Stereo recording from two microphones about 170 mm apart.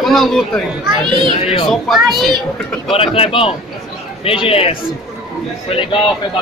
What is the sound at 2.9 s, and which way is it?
Speech, 35° left (ahead or behind).